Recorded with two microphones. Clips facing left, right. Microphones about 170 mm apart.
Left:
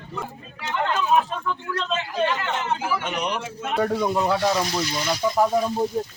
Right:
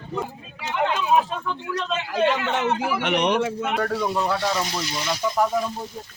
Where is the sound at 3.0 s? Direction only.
80° right.